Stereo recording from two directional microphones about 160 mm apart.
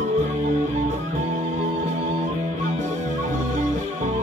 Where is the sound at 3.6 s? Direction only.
50° right (ahead or behind).